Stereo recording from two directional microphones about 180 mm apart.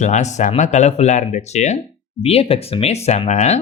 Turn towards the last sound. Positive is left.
turn(degrees=40)  # may be behind; listen again after turning